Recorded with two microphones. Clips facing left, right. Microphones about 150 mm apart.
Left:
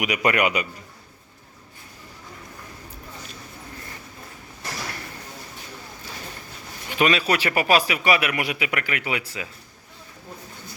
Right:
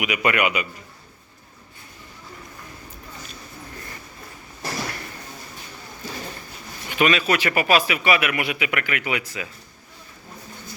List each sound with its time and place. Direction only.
0.0 s a man's voice: 40° left (ahead or behind)
6.9 s a man's voice: 35° left (ahead or behind)